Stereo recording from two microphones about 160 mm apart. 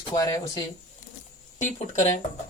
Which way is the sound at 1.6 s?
45° left (ahead or behind).